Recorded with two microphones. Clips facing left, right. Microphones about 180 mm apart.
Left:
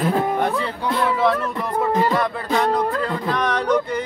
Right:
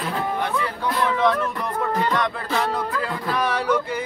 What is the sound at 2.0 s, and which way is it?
Speech, 5° left (ahead or behind).